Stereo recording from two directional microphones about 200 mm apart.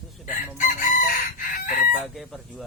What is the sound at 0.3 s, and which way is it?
Chicken, 40° left (ahead or behind).